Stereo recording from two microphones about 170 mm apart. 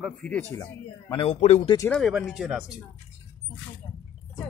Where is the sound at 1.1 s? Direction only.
35° left (ahead or behind).